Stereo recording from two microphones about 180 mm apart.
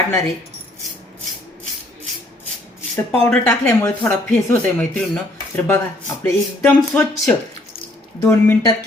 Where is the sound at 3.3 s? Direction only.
10° left (ahead or behind).